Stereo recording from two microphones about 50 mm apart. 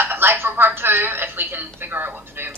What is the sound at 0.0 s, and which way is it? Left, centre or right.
Speech, right.